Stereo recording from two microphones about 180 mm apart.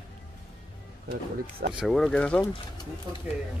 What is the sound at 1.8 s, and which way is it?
Speech, centre (ahead or behind).